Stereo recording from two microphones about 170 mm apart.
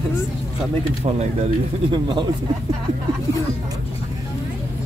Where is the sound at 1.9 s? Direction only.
25° right (ahead or behind).